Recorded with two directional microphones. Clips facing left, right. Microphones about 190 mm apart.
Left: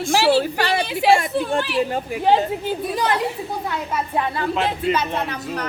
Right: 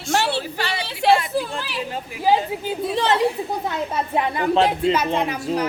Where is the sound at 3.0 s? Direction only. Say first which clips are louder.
Right 6 dB; 25° right (ahead or behind).